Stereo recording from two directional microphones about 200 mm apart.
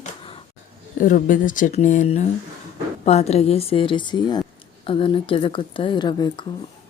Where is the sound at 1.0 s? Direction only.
40° left (ahead or behind).